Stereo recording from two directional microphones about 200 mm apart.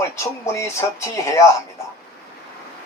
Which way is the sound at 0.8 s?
15° left (ahead or behind).